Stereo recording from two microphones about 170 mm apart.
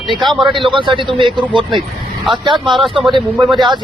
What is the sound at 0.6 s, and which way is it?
Speech, 30° right (ahead or behind).